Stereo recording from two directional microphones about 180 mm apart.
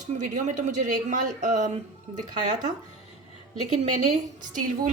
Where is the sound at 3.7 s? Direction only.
40° right (ahead or behind).